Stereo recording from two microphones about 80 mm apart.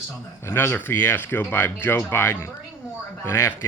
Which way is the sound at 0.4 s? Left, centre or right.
Left.